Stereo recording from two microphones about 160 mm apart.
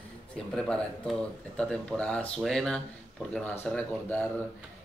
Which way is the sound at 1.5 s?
5° left (ahead or behind).